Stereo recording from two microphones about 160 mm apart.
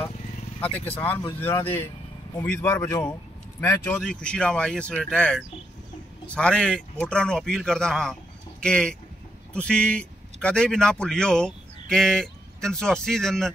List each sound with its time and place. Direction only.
0.6 s speech: 10° left (ahead or behind)
4.0 s a man's voice: 5° left (ahead or behind)